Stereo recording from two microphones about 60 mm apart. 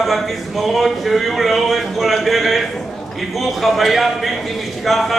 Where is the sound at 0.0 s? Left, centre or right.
Centre.